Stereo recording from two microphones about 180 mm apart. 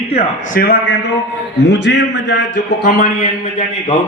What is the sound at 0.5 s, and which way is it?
Speech, 55° left (ahead or behind).